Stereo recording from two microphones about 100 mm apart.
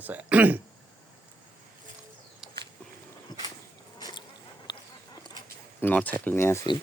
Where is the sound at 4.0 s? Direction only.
45° left (ahead or behind).